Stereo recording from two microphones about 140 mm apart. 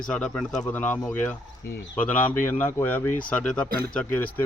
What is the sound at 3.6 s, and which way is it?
Speech, 90° right.